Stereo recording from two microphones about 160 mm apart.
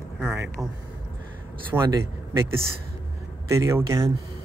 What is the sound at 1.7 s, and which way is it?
Speech, 20° right (ahead or behind).